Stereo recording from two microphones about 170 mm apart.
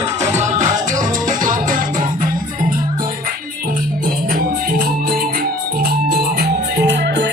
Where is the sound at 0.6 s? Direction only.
45° right (ahead or behind).